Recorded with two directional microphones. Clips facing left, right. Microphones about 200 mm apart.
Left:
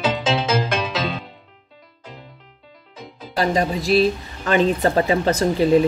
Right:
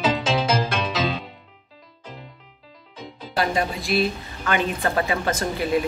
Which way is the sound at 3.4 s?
35° left (ahead or behind).